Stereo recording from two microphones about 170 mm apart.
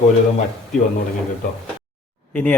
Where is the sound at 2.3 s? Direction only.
10° left (ahead or behind).